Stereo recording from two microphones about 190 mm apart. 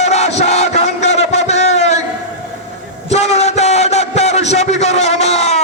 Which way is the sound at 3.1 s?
35° left (ahead or behind).